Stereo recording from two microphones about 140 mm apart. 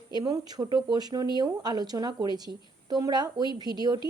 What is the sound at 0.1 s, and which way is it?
Speech, 30° right (ahead or behind).